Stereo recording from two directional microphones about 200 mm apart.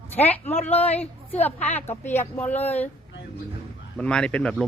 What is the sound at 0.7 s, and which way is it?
Speech, 30° left (ahead or behind).